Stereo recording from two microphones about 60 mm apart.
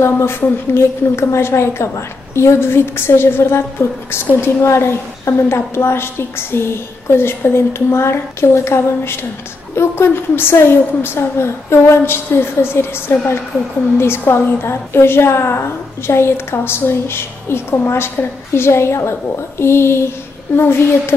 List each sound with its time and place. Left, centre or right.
0.0 s a woman's voice: left
4.6 s a woman's voice: left